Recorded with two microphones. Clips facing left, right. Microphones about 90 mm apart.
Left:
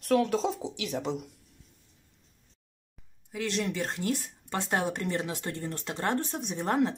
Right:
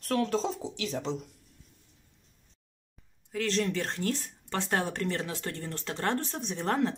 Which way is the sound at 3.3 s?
15° left (ahead or behind).